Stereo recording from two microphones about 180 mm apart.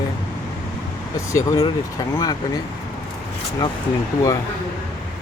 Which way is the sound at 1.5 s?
30° left (ahead or behind).